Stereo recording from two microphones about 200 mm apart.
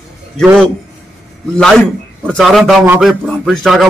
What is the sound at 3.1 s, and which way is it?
Speech, centre (ahead or behind).